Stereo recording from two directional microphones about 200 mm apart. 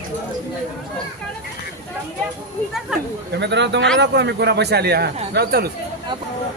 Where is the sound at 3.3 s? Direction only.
60° right (ahead or behind).